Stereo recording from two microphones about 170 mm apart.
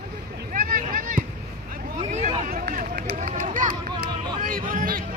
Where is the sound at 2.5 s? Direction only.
55° right (ahead or behind).